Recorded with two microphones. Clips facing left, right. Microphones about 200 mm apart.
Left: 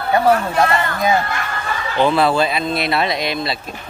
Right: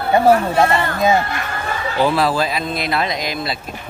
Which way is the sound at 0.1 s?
25° right (ahead or behind).